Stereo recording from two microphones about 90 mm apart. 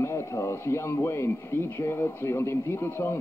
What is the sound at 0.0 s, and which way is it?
Speech, 30° left (ahead or behind).